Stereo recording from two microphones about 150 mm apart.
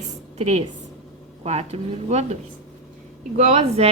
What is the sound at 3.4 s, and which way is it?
Speech, 45° right (ahead or behind).